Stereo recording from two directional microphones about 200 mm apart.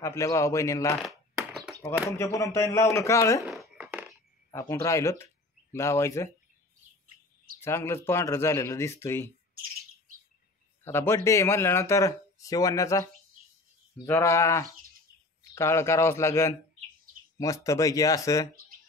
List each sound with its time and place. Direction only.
0.0 s speech: 15° left (ahead or behind)
1.0 s a sound: centre (ahead or behind)
2.0 s speech: 15° left (ahead or behind)
3.4 s a sound: 5° right (ahead or behind)
4.5 s speech: 15° left (ahead or behind)
7.6 s speech: 10° left (ahead or behind)
10.8 s a man's voice: 15° left (ahead or behind)